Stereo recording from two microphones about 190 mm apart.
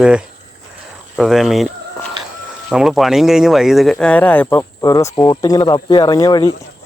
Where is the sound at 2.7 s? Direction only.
Centre (ahead or behind); by 6.5 s 20° left (ahead or behind).